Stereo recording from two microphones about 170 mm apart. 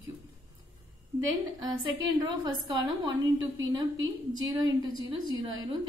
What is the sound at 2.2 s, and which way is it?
Speech, 20° right (ahead or behind).